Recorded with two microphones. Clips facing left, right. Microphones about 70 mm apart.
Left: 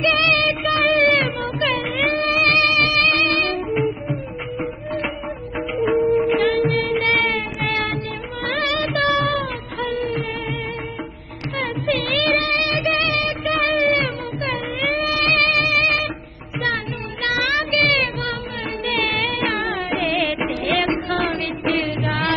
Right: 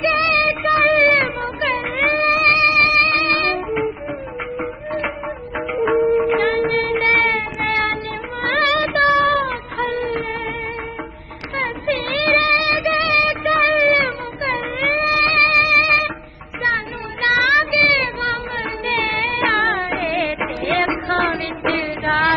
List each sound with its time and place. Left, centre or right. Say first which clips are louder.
0.0 s music: right 1 dB; right
6.1 s music: right 1 dB; right
8.5 s music of bollywood: right 4 dB; right
11.5 s music: right 1 dB; right
17.2 s music: right 6 dB; right
19.5 s music: right 4 dB; right